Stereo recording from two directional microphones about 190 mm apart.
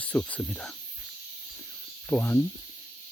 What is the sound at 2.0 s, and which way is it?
Speech, 10° left (ahead or behind).